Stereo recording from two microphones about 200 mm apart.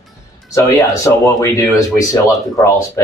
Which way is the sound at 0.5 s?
15° left (ahead or behind).